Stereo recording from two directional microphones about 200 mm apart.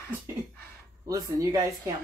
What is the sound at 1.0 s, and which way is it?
Speech, 15° right (ahead or behind).